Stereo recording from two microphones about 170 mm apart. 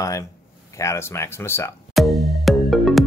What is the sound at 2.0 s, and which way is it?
Music, centre (ahead or behind).